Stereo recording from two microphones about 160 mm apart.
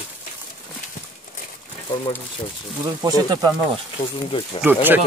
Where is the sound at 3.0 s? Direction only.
25° right (ahead or behind).